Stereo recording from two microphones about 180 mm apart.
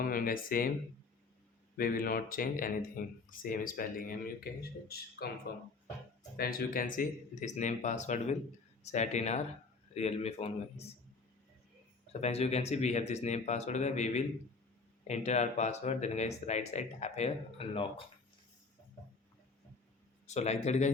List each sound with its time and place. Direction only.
0.0 s speech: 55° left (ahead or behind)
1.7 s speech: 55° left (ahead or behind); by 10.9 s 35° left (ahead or behind)
12.2 s speech: 35° left (ahead or behind)
20.2 s speech: 40° left (ahead or behind)